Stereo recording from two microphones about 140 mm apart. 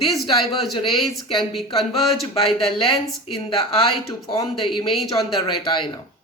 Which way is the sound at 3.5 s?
40° left (ahead or behind).